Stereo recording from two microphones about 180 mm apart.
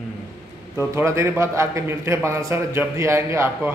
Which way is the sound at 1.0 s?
15° right (ahead or behind).